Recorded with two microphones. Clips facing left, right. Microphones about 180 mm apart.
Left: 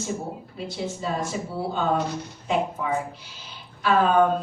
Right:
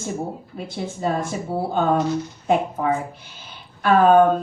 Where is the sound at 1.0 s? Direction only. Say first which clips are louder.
Right 7 dB; 50° right (ahead or behind).